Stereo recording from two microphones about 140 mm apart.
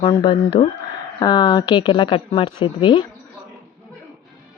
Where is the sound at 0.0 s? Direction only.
35° left (ahead or behind).